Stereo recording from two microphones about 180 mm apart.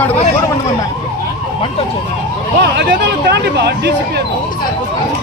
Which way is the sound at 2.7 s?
65° right (ahead or behind).